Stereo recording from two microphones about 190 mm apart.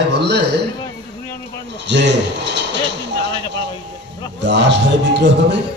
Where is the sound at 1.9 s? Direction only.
65° right (ahead or behind).